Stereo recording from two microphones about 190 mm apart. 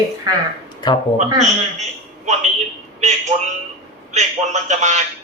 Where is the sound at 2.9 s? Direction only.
40° right (ahead or behind).